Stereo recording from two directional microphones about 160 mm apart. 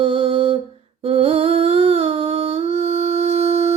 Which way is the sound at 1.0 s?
35° right (ahead or behind).